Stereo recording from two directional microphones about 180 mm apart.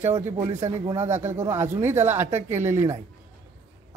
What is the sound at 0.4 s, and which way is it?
Speech, 15° right (ahead or behind).